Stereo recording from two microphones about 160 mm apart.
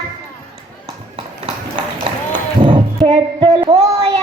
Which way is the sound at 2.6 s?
30° right (ahead or behind).